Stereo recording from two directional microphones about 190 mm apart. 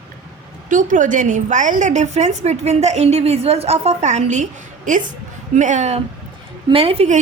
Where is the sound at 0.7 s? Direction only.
40° right (ahead or behind).